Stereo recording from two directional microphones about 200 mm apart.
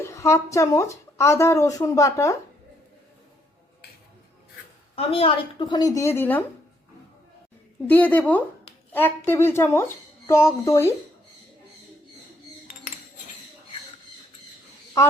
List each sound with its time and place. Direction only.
0.0 s speech: 15° left (ahead or behind)
4.9 s a woman's voice: 30° left (ahead or behind); by 6.4 s 10° left (ahead or behind)
7.9 s speech: 10° left (ahead or behind)